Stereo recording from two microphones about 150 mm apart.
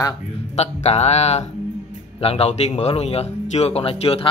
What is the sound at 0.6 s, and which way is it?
Speech, 45° left (ahead or behind).